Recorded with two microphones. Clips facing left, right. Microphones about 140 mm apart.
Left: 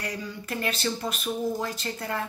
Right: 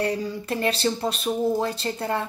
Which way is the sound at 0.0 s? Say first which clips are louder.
Right 9 dB; 30° right (ahead or behind).